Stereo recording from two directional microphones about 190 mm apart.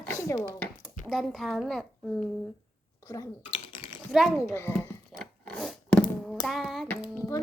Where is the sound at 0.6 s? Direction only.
Centre (ahead or behind).